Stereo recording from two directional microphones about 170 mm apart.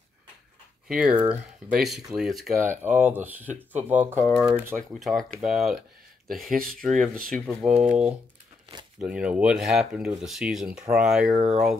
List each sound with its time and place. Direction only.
0.8 s speech: 5° right (ahead or behind)
4.4 s speech: 5° right (ahead or behind)
7.0 s speech: 5° left (ahead or behind)
11.3 s speech: 35° right (ahead or behind)